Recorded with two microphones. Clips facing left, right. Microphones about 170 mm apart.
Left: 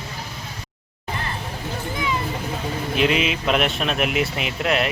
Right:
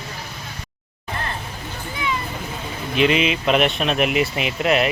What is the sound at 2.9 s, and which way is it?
Speech, centre (ahead or behind).